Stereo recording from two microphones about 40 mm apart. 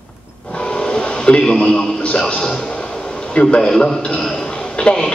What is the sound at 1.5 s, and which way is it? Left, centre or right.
Speech, centre.